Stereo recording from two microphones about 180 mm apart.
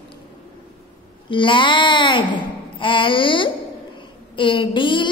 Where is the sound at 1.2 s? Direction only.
25° left (ahead or behind).